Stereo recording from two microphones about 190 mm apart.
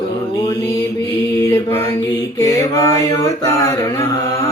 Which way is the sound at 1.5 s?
15° left (ahead or behind).